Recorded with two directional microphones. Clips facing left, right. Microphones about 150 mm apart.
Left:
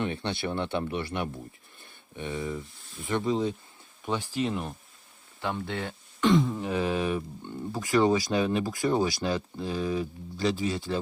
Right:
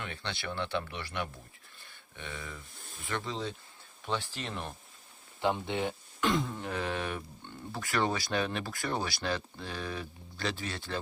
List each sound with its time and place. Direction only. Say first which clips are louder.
0.0 s speech: left 9 dB; 20° left (ahead or behind)
5.4 s speech: right 1 dB; 20° right (ahead or behind)
6.1 s speech: left 8 dB; centre (ahead or behind)
7.7 s speech: left 8 dB; 15° left (ahead or behind)